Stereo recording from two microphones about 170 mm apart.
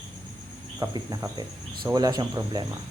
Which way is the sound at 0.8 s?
20° right (ahead or behind).